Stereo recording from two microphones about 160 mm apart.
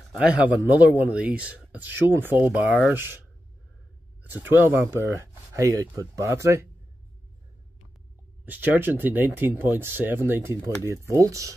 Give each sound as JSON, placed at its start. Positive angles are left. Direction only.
{"t": 0.2, "sound": "speech", "side_deg": -10}
{"t": 4.4, "sound": "speech", "side_deg": -15}
{"t": 8.5, "sound": "speech", "side_deg": -10}